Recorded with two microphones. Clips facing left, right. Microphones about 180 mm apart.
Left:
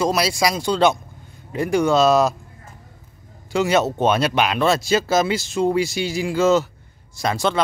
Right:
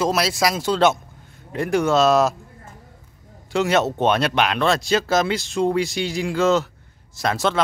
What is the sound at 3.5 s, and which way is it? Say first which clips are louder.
Speech: left 1 dB; centre (ahead or behind).